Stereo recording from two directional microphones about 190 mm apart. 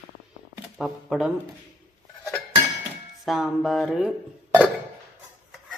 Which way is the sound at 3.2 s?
Centre (ahead or behind).